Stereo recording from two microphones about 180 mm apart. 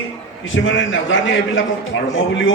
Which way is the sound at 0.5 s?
90° left.